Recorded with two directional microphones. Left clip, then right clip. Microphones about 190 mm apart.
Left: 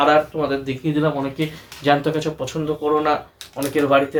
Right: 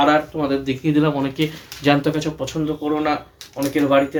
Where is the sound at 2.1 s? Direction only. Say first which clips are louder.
Even; 10° right (ahead or behind).